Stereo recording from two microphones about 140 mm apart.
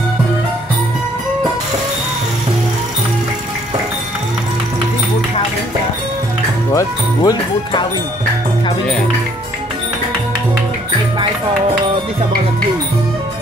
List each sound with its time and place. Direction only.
6.7 s speech: 25° left (ahead or behind)